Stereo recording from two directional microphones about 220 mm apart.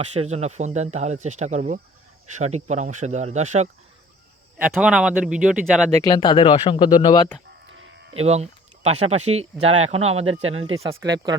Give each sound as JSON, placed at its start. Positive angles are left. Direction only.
{"t": 0.0, "sound": "speech", "side_deg": -30}
{"t": 4.5, "sound": "speech", "side_deg": -5}
{"t": 6.0, "sound": "speech", "side_deg": 20}
{"t": 7.7, "sound": "a sound", "side_deg": -55}
{"t": 8.2, "sound": "speech", "side_deg": -30}